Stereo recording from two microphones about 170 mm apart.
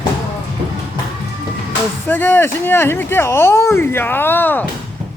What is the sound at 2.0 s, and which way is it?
Speech, 10° left (ahead or behind).